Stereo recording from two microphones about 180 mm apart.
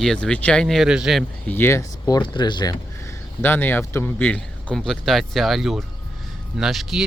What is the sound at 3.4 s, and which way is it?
Speech, 10° left (ahead or behind).